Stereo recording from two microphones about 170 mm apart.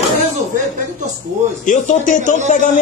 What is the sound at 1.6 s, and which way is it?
Speech, 50° left (ahead or behind).